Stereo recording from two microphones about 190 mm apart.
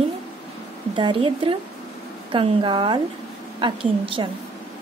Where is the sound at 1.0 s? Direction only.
25° right (ahead or behind).